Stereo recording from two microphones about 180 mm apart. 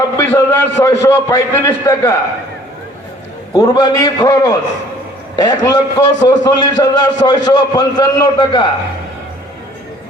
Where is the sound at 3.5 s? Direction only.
20° left (ahead or behind).